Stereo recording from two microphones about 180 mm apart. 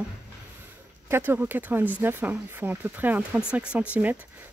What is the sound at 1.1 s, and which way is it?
Speech, 10° right (ahead or behind).